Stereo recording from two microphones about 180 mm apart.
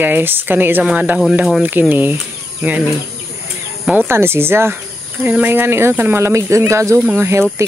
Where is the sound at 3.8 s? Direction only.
5° right (ahead or behind).